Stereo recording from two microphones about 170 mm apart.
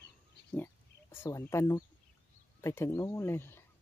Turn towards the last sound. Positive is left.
turn(degrees=15)  # may be behind; listen again after turning